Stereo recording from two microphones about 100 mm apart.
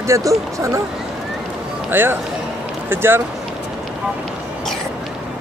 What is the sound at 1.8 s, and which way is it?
Speech, 20° right (ahead or behind).